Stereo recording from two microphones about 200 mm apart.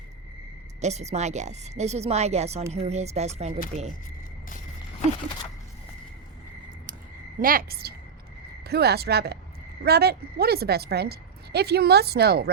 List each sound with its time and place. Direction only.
0.8 s speech: 35° right (ahead or behind)
7.3 s a woman's voice: 45° right (ahead or behind)